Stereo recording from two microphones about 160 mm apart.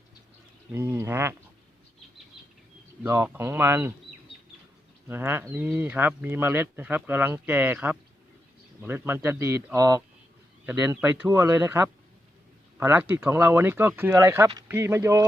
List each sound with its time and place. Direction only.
0.7 s speech: 15° right (ahead or behind)
3.0 s speech: 15° right (ahead or behind)
5.0 s speech: 15° right (ahead or behind)